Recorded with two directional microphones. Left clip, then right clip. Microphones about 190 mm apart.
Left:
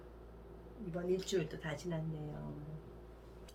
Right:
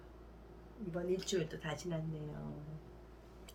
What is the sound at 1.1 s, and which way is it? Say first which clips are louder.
Speech: left 2 dB; 15° right (ahead or behind).